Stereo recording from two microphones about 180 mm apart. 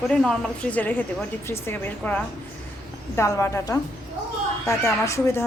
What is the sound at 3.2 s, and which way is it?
A woman's voice, 15° left (ahead or behind).